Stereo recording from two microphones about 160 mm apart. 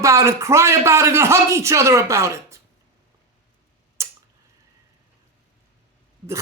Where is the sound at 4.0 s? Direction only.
20° right (ahead or behind).